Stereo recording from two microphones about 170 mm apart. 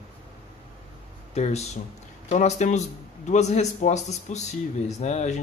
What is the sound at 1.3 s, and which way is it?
A man's voice, 40° left (ahead or behind).